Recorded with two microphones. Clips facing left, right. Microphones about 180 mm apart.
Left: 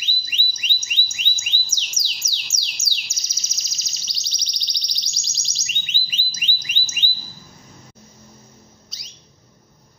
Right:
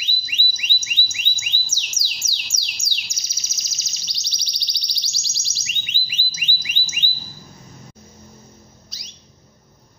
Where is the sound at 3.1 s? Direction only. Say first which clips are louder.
Even; 15° right (ahead or behind).